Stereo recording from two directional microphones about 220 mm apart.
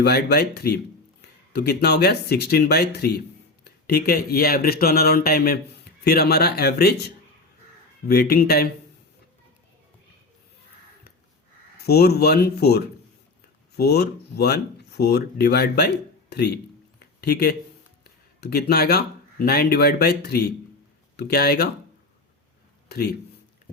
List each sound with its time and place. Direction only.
0.0 s speech: 45° left (ahead or behind)
11.8 s speech: 45° left (ahead or behind)
22.9 s speech: 45° left (ahead or behind)